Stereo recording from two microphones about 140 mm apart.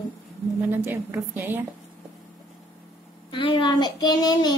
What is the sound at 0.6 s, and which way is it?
A woman's voice, 15° right (ahead or behind).